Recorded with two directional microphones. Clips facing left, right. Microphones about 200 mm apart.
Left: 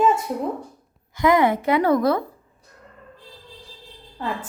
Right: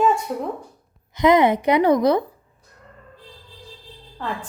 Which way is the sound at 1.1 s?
20° right (ahead or behind).